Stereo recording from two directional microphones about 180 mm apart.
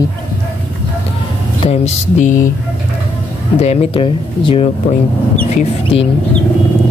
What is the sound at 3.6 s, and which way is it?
Speech, 35° left (ahead or behind).